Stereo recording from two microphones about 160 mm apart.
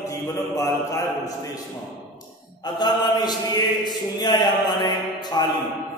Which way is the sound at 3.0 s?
25° left (ahead or behind).